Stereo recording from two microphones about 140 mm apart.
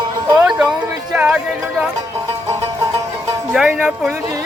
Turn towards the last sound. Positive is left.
turn(degrees=-10)  # may be behind; listen again after turning